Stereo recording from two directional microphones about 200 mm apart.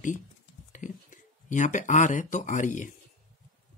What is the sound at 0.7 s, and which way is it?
Speech, 40° left (ahead or behind).